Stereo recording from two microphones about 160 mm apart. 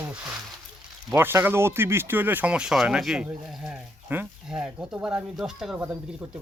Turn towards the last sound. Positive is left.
turn(degrees=-5)  # may be behind; listen again after turning